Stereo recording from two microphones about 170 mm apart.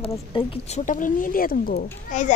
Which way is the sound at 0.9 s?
50° left (ahead or behind).